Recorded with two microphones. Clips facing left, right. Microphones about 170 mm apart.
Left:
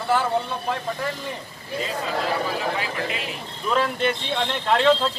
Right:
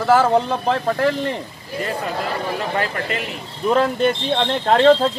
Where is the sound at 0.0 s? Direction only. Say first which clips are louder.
Right 7 dB; 80° right.